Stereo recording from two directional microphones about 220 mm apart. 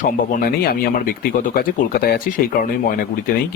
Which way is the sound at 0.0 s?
40° left (ahead or behind).